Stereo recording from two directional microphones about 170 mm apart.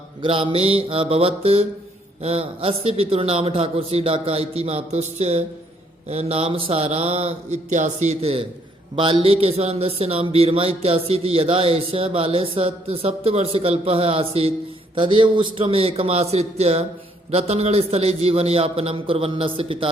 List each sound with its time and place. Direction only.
0.2 s speech: 30° right (ahead or behind)